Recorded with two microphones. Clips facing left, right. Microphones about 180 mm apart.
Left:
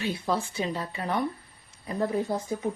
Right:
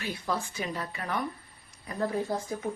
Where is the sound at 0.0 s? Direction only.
25° left (ahead or behind).